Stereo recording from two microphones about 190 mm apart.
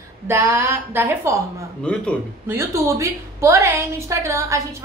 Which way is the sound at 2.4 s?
15° right (ahead or behind).